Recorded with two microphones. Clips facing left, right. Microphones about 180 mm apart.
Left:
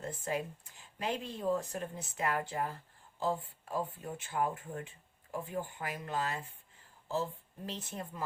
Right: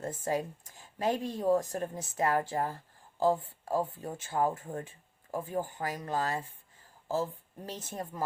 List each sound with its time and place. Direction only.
0.0 s speech: 45° right (ahead or behind)